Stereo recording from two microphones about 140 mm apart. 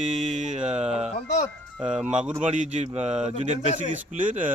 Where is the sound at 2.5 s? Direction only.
60° right (ahead or behind).